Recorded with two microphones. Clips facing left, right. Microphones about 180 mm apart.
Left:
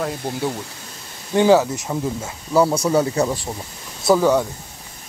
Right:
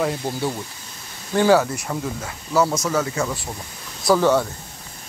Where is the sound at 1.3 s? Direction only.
15° left (ahead or behind).